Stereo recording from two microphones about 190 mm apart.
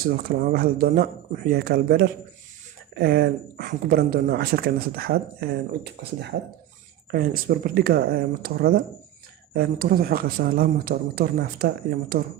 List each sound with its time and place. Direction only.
0.0 s speech: 55° right (ahead or behind)